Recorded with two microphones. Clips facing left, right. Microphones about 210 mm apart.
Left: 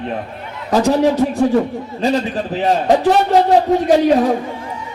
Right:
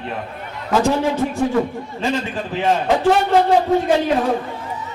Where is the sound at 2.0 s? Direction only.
40° left (ahead or behind).